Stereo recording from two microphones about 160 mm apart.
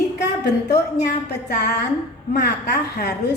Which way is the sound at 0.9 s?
90° left.